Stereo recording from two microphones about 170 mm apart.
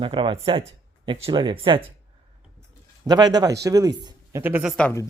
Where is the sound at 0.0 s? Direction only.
30° right (ahead or behind).